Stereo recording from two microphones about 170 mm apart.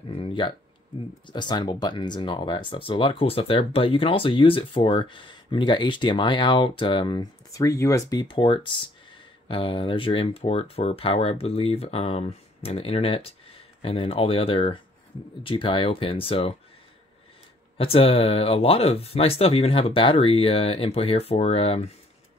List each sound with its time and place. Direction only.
0.1 s a sound: 30° left (ahead or behind)
1.2 s speech: 25° left (ahead or behind)
17.7 s speech: 35° left (ahead or behind)